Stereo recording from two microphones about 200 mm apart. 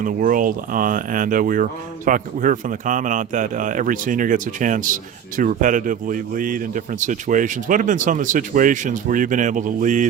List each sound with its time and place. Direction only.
0.0 s speech: 40° right (ahead or behind)